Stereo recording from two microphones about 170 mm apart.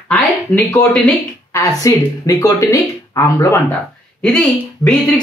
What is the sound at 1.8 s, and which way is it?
Speech, 20° left (ahead or behind).